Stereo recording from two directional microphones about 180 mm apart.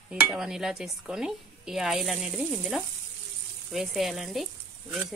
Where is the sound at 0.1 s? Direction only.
5° right (ahead or behind).